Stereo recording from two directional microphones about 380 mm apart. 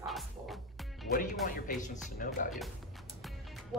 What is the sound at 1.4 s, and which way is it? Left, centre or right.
Speech, centre.